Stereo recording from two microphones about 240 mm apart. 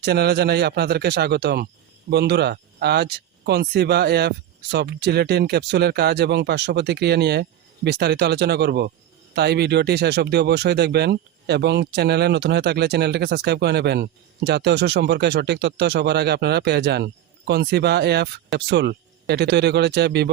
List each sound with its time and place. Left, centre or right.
0.0 s speech: right